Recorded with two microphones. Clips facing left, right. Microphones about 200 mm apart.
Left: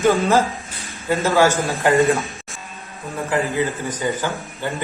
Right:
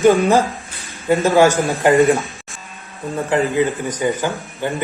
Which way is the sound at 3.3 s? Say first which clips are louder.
Right 4 dB; 15° right (ahead or behind).